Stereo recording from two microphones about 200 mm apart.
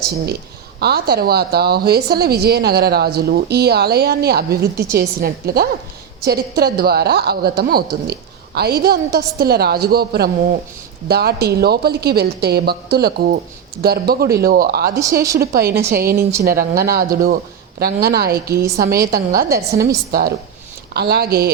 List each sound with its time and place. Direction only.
0.8 s a woman's voice: 50° right (ahead or behind)